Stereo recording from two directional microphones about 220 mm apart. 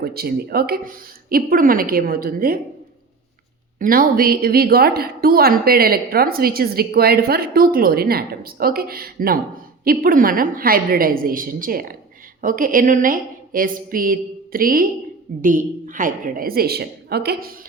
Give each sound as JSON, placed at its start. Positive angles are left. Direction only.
{"t": 0.0, "sound": "a woman's voice", "side_deg": -45}
{"t": 3.8, "sound": "a woman's voice", "side_deg": -40}